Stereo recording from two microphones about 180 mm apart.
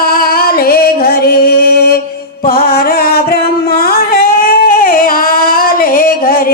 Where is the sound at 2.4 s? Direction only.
55° left (ahead or behind).